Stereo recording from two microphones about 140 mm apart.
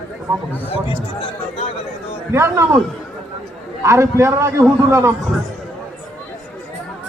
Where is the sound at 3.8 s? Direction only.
20° right (ahead or behind).